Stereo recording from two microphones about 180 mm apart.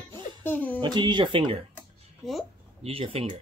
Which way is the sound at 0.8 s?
25° right (ahead or behind).